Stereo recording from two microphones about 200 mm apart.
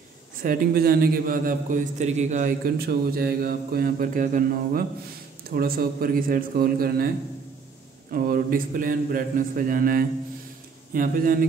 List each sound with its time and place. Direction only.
0.4 s a man's voice: 45° right (ahead or behind)
8.1 s a man's voice: 45° right (ahead or behind)